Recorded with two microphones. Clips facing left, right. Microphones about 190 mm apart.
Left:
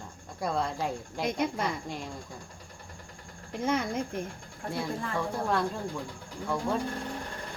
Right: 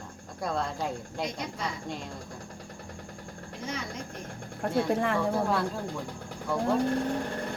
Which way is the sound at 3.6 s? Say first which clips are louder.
Left 8 dB; 55° left (ahead or behind).